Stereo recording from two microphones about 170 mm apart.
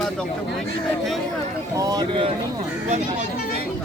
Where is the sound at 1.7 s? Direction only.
20° right (ahead or behind).